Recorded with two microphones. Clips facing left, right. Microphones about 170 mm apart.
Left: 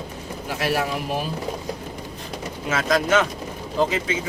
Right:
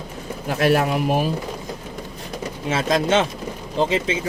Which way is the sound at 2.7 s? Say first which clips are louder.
Right 1 dB; 30° right (ahead or behind).